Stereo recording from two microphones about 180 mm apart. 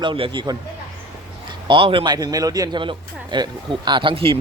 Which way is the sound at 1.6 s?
30° right (ahead or behind).